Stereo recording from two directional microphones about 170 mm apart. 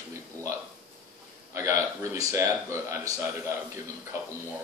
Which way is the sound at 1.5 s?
15° right (ahead or behind).